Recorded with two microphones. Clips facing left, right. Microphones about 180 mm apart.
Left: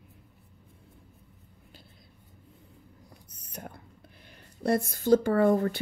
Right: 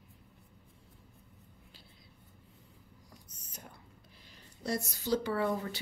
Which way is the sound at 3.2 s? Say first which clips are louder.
Left 11 dB; 60° left (ahead or behind).